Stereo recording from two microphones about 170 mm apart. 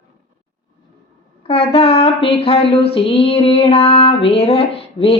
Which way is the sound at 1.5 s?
35° left (ahead or behind).